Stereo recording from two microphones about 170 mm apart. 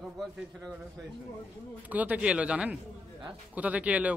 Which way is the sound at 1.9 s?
10° right (ahead or behind).